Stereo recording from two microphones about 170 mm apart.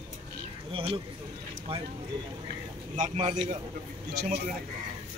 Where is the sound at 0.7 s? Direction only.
35° right (ahead or behind).